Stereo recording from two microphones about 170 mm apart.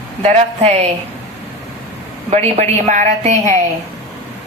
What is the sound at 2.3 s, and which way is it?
A woman's voice, 40° right (ahead or behind).